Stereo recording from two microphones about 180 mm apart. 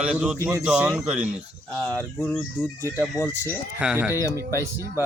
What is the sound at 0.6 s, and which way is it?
Speech, 5° right (ahead or behind).